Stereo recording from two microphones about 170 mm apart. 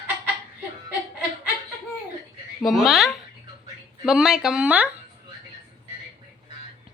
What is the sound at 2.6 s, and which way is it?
Speech, centre (ahead or behind).